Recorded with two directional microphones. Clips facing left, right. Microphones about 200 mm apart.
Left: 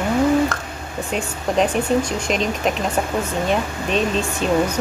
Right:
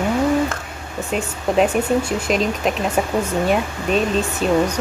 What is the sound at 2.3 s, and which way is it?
Speech, centre (ahead or behind).